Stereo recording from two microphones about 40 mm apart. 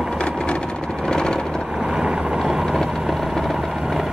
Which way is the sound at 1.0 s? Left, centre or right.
Centre.